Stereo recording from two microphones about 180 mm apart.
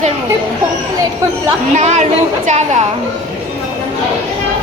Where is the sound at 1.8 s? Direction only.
40° right (ahead or behind).